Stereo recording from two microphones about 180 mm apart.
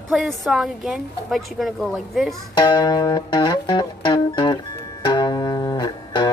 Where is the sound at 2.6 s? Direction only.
25° left (ahead or behind).